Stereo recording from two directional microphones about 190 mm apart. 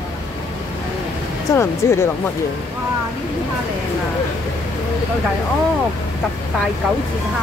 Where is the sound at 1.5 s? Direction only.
15° left (ahead or behind).